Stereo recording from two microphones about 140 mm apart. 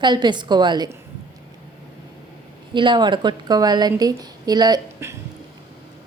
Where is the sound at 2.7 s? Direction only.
35° right (ahead or behind).